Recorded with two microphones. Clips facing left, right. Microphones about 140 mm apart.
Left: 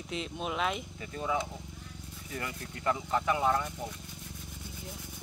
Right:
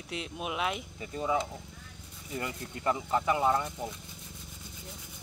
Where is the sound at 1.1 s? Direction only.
20° right (ahead or behind).